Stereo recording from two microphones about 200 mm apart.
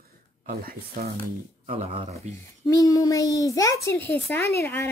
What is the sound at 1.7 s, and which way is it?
Speech, 30° right (ahead or behind).